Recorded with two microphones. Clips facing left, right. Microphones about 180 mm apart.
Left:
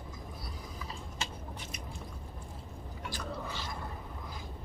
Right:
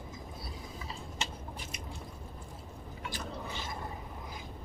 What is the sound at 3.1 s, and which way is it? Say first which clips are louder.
Chewing: left 2 dB; 20° right (ahead or behind).